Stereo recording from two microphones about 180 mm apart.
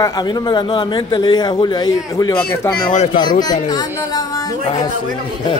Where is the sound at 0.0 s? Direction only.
20° left (ahead or behind).